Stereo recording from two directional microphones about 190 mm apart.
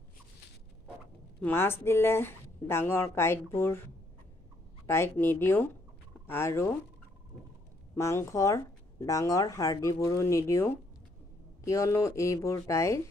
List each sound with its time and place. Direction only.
1.4 s speech: 10° left (ahead or behind)
4.8 s speech: 10° left (ahead or behind)
7.9 s speech: 15° left (ahead or behind)